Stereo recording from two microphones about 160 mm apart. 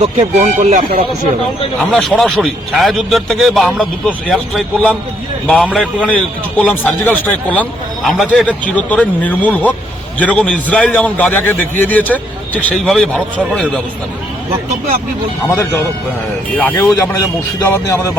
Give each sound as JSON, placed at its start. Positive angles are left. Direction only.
{"t": 0.0, "sound": "speech", "side_deg": -45}
{"t": 1.9, "sound": "a man's voice", "side_deg": 0}
{"t": 6.1, "sound": "speech", "side_deg": 10}
{"t": 16.6, "sound": "speech", "side_deg": 15}
{"t": 17.8, "sound": "music", "side_deg": 20}